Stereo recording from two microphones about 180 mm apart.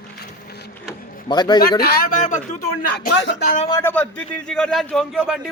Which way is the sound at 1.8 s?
55° left (ahead or behind).